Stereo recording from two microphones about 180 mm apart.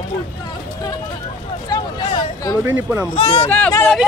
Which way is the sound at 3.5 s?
10° left (ahead or behind).